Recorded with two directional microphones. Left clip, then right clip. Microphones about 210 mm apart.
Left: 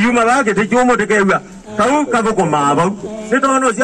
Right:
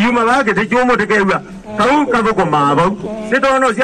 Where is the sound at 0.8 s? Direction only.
50° left (ahead or behind).